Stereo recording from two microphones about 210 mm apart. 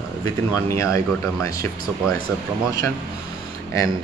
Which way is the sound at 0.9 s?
15° left (ahead or behind).